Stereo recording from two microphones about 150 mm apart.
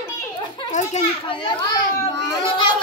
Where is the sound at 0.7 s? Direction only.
55° left (ahead or behind).